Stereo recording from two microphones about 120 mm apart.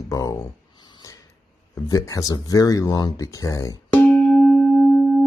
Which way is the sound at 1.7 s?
30° left (ahead or behind).